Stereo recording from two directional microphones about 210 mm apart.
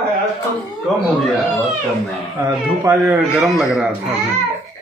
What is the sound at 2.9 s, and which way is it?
Speech, 15° right (ahead or behind).